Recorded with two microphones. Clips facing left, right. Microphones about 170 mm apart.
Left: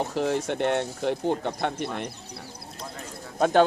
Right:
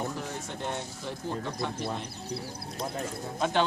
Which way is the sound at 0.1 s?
80° left.